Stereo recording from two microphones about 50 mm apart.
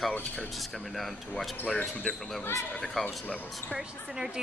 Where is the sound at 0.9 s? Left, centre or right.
Centre.